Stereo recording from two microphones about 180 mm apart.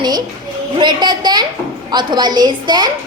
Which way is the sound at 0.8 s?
25° right (ahead or behind).